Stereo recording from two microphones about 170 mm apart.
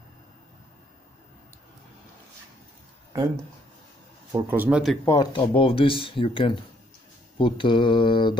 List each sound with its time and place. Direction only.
4.3 s speech: 15° right (ahead or behind)
5.0 s speech: 20° left (ahead or behind)
7.3 s mantra: 30° left (ahead or behind)